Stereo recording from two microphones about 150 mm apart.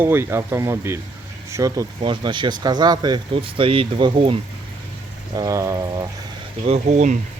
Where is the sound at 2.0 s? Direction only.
30° right (ahead or behind).